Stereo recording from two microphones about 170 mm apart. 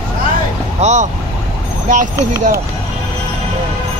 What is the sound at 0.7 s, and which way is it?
Speech, 45° right (ahead or behind).